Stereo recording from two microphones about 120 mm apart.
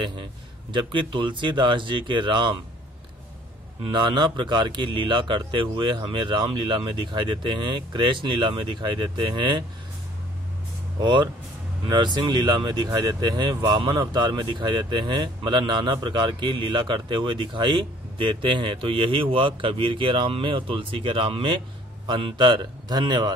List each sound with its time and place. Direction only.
0.0 s a sound: 40° right (ahead or behind)
0.7 s speech: 45° right (ahead or behind)
3.8 s speech: 40° right (ahead or behind)
11.0 s speech: 40° right (ahead or behind)